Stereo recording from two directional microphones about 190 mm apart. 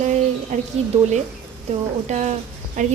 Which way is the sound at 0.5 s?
40° right (ahead or behind).